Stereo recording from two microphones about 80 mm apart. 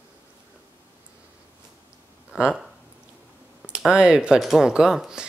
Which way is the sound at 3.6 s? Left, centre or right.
Centre.